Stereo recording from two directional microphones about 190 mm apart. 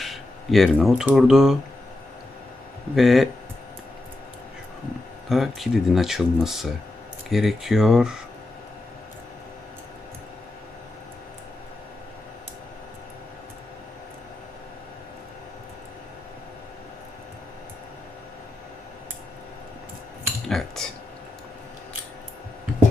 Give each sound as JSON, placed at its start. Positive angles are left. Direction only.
{"t": 0.0, "sound": "speech", "side_deg": 0}
{"t": 2.9, "sound": "speech", "side_deg": 0}
{"t": 5.3, "sound": "speech", "side_deg": 0}
{"t": 20.5, "sound": "cutlery", "side_deg": 0}